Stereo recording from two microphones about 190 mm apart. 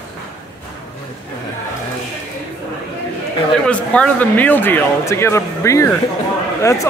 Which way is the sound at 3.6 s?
5° left (ahead or behind).